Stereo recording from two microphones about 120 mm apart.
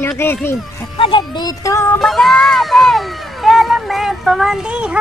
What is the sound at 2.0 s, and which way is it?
Speech, centre (ahead or behind).